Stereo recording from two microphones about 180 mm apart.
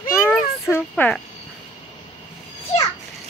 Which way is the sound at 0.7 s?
10° left (ahead or behind).